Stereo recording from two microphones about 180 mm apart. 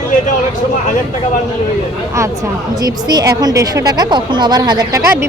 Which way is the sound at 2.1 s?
15° right (ahead or behind).